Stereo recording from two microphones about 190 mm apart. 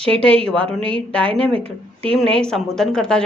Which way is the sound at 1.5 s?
30° right (ahead or behind).